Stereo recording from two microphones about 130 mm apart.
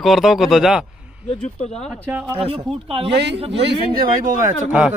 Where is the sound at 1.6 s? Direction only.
55° left (ahead or behind).